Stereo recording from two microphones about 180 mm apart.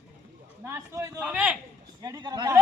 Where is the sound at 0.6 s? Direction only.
15° right (ahead or behind).